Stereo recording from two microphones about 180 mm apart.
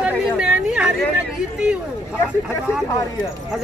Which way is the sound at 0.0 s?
5° right (ahead or behind).